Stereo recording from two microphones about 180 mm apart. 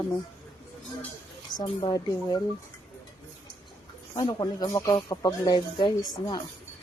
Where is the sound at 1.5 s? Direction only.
25° left (ahead or behind).